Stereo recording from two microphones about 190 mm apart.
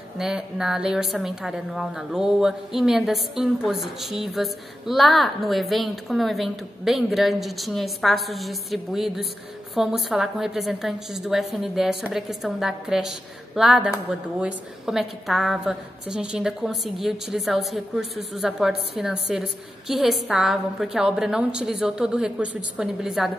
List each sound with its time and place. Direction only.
0.2 s a woman's voice: centre (ahead or behind)